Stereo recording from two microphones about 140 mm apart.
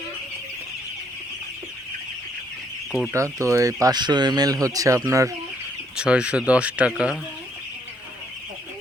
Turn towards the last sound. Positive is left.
turn(degrees=-5)  # may be behind; listen again after turning